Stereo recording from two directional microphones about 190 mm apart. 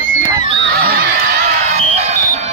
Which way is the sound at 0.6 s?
55° right (ahead or behind).